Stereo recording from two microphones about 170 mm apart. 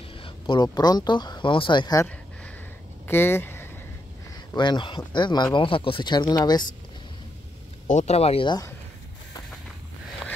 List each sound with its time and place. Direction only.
0.2 s speech: 25° left (ahead or behind)
3.1 s a sound: 15° left (ahead or behind)
4.6 s speech: 25° left (ahead or behind)
7.9 s speech: 40° left (ahead or behind)